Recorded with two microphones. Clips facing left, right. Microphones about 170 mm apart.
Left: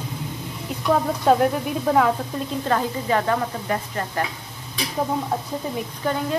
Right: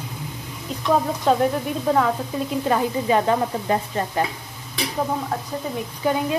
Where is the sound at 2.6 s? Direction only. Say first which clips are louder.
Right 2 dB; 15° right (ahead or behind).